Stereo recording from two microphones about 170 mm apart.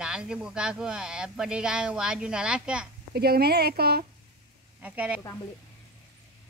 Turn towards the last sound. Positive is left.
turn(degrees=-10)  # may be behind; listen again after turning